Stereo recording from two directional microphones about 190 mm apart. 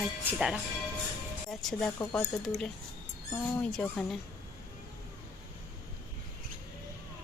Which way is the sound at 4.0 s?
Centre (ahead or behind).